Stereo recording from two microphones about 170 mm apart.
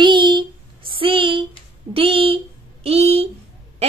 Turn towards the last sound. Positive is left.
turn(degrees=-35)  # may be behind; listen again after turning